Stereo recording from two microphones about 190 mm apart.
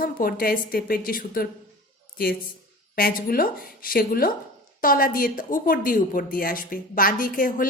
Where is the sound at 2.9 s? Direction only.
50° left (ahead or behind).